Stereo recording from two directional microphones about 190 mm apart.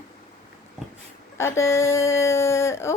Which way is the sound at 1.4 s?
15° left (ahead or behind).